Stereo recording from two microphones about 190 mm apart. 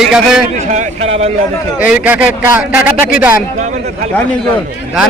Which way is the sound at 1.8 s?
5° right (ahead or behind).